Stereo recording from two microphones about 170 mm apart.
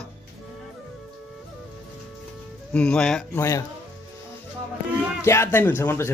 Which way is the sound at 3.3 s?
20° left (ahead or behind).